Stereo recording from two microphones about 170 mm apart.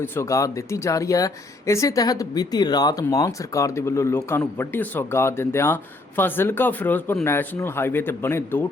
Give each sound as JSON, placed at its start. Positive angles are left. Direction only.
{"t": 0.0, "sound": "speech", "side_deg": 15}